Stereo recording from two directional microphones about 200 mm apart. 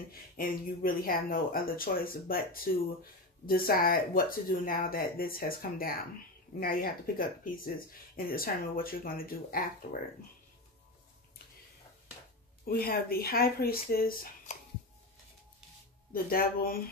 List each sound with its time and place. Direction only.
0.4 s speech: 45° left (ahead or behind)
12.6 s speech: 50° left (ahead or behind)
16.1 s speech: 45° left (ahead or behind)